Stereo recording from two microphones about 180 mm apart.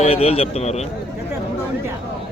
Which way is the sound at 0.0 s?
35° left (ahead or behind).